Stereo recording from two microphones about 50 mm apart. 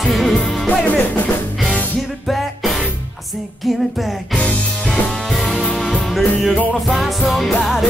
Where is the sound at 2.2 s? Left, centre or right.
Centre.